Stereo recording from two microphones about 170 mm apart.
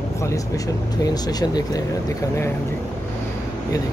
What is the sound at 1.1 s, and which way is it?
Speech, 25° left (ahead or behind).